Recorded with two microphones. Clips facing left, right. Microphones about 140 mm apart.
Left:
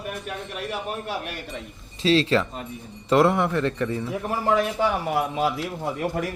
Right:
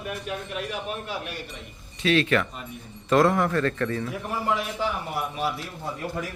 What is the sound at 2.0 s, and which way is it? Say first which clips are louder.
Speech: left 2 dB; 30° left (ahead or behind).